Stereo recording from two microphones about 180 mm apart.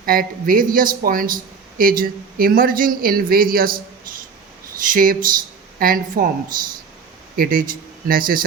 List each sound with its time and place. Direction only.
0.0 s speech: 50° right (ahead or behind)
4.8 s speech: 50° right (ahead or behind)
7.3 s speech: 50° right (ahead or behind)